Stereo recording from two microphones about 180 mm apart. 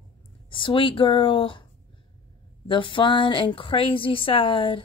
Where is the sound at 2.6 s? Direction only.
25° left (ahead or behind).